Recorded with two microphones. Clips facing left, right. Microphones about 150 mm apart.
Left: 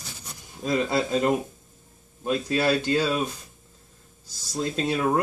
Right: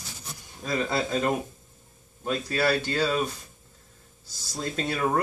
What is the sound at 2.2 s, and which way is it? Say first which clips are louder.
Speech: left 2 dB; 20° left (ahead or behind).